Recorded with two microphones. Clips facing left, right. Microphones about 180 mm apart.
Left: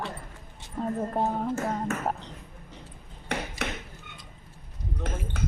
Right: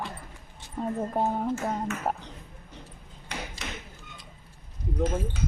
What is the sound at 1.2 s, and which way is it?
Speech, 5° right (ahead or behind).